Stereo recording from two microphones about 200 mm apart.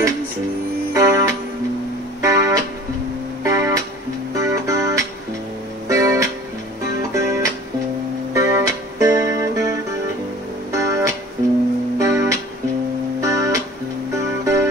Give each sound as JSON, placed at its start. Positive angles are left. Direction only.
{"t": 0.9, "sound": "music", "side_deg": -15}